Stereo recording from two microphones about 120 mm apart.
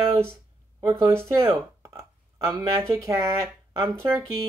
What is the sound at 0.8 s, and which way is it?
Speech, 25° right (ahead or behind).